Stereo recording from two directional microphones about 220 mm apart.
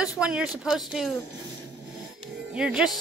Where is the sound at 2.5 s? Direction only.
5° right (ahead or behind).